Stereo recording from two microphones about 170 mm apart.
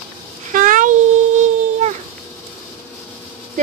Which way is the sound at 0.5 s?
50° right (ahead or behind).